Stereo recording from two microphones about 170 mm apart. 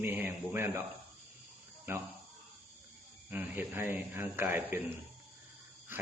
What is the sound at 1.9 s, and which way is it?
Speech, 15° right (ahead or behind).